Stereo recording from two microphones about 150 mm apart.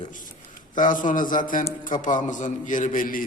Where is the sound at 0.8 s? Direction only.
60° left (ahead or behind).